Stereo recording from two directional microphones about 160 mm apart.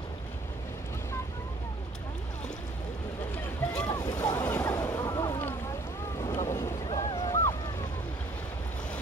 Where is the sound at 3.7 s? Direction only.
25° left (ahead or behind).